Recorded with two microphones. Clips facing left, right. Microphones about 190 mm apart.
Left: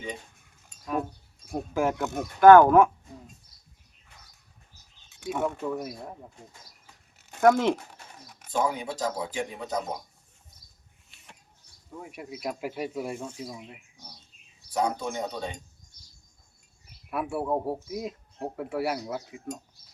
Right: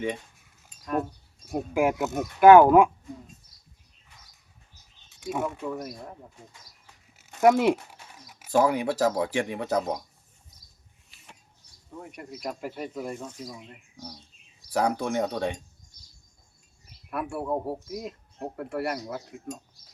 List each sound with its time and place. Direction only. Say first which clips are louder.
0.3 s cutlery: even; centre (ahead or behind)
1.7 s speech: right 2 dB; 10° right (ahead or behind)
5.0 s speech: left 1 dB; centre (ahead or behind)
7.2 s zipper: right 1 dB; centre (ahead or behind)
8.5 s speech: right 6 dB; 65° right (ahead or behind)
11.1 s a sound: right 1 dB; centre (ahead or behind)
12.0 s speech: left 1 dB; 5° left (ahead or behind)
14.7 s speech: right 3 dB; 65° right (ahead or behind)
17.1 s speech: left 1 dB; 5° left (ahead or behind)